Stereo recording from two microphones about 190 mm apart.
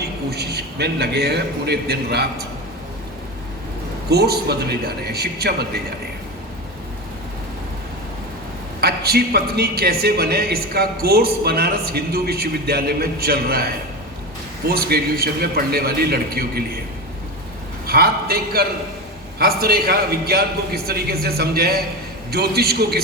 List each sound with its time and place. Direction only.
0.0 s a man's voice: 60° right (ahead or behind)
4.1 s a man's voice: 55° right (ahead or behind)
8.8 s a man's voice: 55° right (ahead or behind)
17.8 s a man's voice: 55° right (ahead or behind)